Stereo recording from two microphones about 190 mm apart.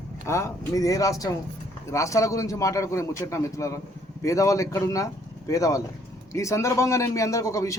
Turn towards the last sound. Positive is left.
turn(degrees=15)  # may be behind; listen again after turning